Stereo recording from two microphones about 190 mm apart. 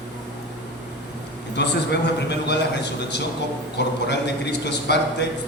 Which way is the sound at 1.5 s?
65° left (ahead or behind).